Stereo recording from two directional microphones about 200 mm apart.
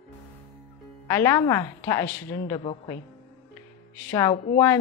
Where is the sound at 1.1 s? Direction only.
10° left (ahead or behind).